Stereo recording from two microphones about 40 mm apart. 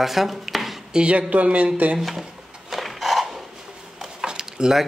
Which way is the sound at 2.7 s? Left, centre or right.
Centre.